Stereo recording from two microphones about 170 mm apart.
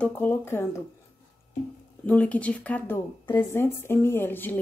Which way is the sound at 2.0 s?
10° left (ahead or behind).